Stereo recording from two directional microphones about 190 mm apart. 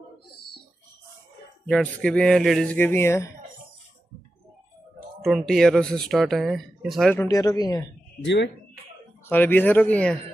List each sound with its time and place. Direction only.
1.7 s speech: 5° left (ahead or behind)
5.2 s speech: centre (ahead or behind)
7.2 s speech: 20° left (ahead or behind)
8.2 s speech: 70° left (ahead or behind)
9.3 s speech: 10° left (ahead or behind)